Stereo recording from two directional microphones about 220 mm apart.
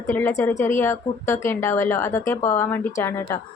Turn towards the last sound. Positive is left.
turn(degrees=10)  # may be behind; listen again after turning